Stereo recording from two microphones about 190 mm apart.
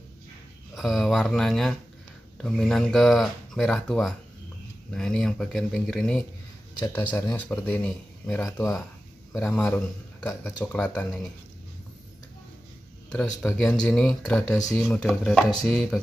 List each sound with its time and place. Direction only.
0.7 s speech: centre (ahead or behind)
7.2 s speech: 15° left (ahead or behind)
13.1 s speech: 5° left (ahead or behind)